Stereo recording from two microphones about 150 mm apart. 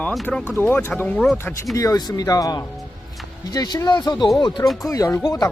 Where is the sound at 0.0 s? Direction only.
5° left (ahead or behind).